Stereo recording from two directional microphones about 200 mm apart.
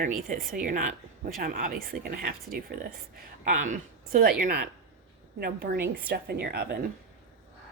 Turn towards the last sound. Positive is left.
turn(degrees=-50)  # may be behind; listen again after turning